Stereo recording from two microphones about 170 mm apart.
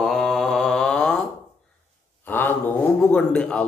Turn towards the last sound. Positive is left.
turn(degrees=5)  # may be behind; listen again after turning